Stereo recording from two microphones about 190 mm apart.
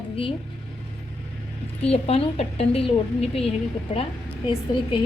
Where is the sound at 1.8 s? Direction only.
30° left (ahead or behind).